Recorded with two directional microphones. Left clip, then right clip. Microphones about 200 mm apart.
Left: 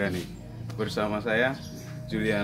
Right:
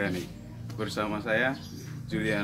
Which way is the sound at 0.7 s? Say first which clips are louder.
Left 3 dB; 10° left (ahead or behind).